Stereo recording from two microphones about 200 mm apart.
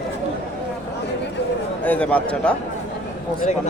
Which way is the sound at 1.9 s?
5° left (ahead or behind).